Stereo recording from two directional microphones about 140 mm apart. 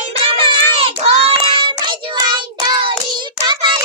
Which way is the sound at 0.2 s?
40° right (ahead or behind).